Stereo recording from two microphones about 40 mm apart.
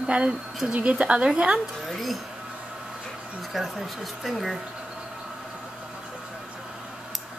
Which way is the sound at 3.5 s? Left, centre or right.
Centre.